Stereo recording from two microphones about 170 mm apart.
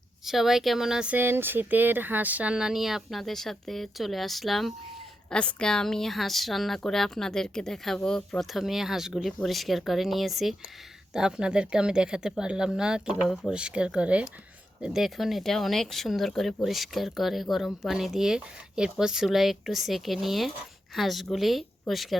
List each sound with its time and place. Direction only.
0.3 s speech: centre (ahead or behind)